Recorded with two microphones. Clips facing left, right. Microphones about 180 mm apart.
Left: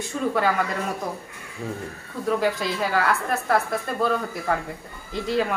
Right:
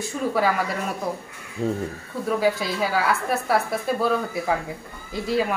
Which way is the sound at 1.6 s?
25° right (ahead or behind).